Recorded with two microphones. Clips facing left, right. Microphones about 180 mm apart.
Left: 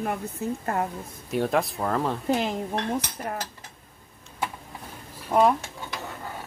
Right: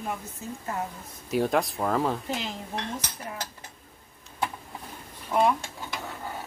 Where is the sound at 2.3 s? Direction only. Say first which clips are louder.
Left 7 dB; 50° left (ahead or behind).